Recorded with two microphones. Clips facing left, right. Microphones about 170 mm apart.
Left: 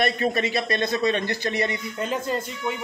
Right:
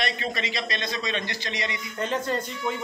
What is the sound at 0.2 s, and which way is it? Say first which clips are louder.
A man's voice: left 7 dB; 50° left (ahead or behind).